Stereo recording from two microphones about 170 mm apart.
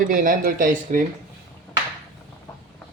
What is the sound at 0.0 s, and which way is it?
Speech, 50° right (ahead or behind).